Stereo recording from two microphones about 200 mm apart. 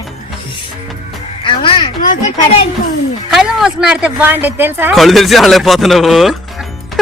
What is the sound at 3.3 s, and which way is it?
Speech, centre (ahead or behind).